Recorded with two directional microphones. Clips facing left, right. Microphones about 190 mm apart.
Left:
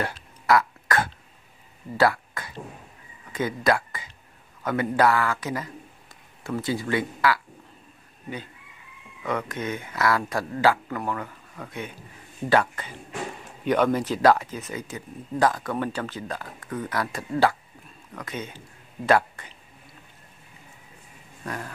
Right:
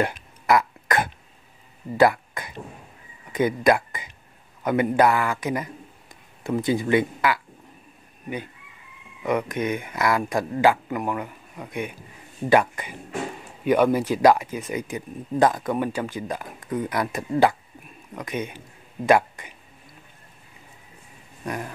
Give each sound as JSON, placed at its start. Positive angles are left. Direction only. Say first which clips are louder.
{"t": 0.0, "sound": "cough", "louder": "right 5 dB", "side_deg": -15}
{"t": 2.0, "sound": "a sound", "louder": "right 4 dB", "side_deg": -15}
{"t": 3.3, "sound": "speech", "louder": "right 4 dB", "side_deg": -15}
{"t": 9.2, "sound": "speech", "louder": "right 5 dB", "side_deg": -15}
{"t": 21.5, "sound": "speech", "louder": "right 3 dB", "side_deg": -15}